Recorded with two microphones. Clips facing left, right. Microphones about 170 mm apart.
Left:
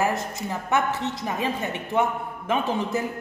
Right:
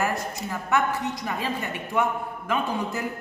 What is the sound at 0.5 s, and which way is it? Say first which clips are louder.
A woman's voice: even; 20° left (ahead or behind).